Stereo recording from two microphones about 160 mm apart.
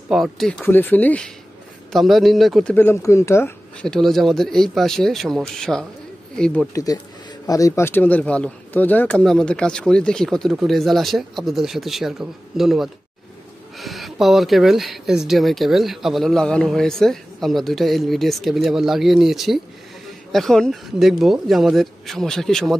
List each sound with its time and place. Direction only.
0.1 s speech: centre (ahead or behind); by 3.5 s 15° left (ahead or behind)
3.8 s speech: 5° left (ahead or behind)
6.7 s speech: 20° left (ahead or behind); by 22.8 s 5° left (ahead or behind)